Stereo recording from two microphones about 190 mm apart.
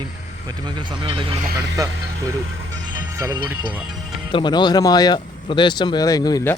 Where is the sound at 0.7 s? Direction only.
25° right (ahead or behind).